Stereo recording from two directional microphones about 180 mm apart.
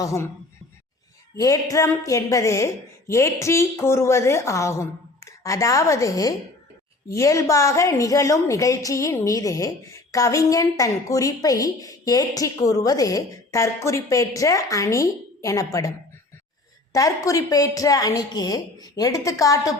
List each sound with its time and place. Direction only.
0.0 s a woman's voice: 15° left (ahead or behind)
1.4 s a woman's voice: 20° left (ahead or behind)